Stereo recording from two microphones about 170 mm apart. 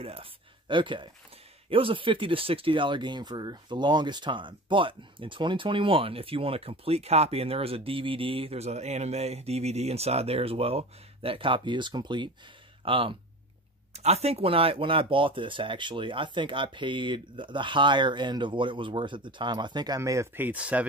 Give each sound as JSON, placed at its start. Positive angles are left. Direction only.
{"t": 0.0, "sound": "speech", "side_deg": -35}